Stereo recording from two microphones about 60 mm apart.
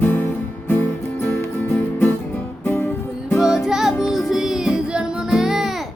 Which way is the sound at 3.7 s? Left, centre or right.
Centre.